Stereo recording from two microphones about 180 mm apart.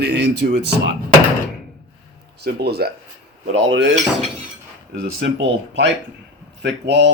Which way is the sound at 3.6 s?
90° right.